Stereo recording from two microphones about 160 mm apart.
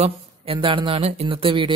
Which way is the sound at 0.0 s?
35° right (ahead or behind).